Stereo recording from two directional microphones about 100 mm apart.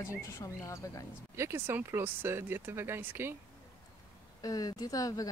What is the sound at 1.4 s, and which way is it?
Speech, 25° right (ahead or behind).